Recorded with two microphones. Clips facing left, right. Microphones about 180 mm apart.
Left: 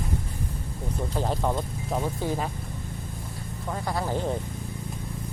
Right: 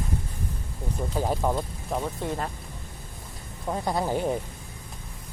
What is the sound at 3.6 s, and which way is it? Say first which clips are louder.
Speech: right 3 dB; 20° right (ahead or behind).